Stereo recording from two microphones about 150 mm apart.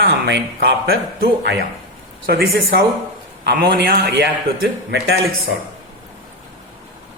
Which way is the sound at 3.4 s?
90° right.